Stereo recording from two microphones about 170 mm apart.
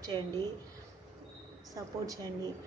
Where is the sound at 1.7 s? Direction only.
20° right (ahead or behind).